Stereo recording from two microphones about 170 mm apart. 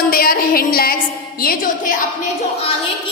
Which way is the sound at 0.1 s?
60° left (ahead or behind).